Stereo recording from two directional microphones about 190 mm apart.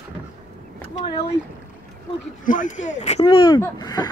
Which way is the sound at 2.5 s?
40° left (ahead or behind).